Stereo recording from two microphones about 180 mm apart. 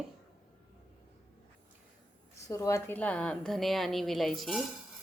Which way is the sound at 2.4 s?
15° left (ahead or behind).